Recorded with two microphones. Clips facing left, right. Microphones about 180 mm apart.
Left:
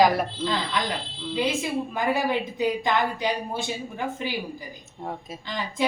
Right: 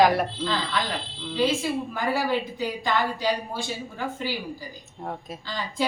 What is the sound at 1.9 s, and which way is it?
A woman's voice, 20° left (ahead or behind).